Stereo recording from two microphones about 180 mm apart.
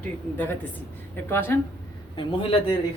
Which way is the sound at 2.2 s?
30° left (ahead or behind).